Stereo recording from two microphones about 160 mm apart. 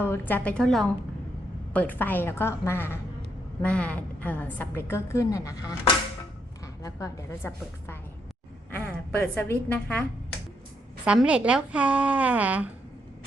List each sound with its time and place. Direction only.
0.0 s a woman's voice: 15° left (ahead or behind)
6.8 s a woman's voice: 20° left (ahead or behind)
11.0 s speech: 5° right (ahead or behind)